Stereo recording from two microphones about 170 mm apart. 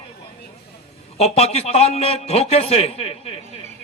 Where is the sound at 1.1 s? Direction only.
35° left (ahead or behind).